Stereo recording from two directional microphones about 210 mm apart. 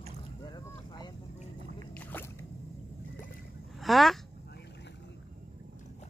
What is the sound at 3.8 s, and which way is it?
Speech, centre (ahead or behind).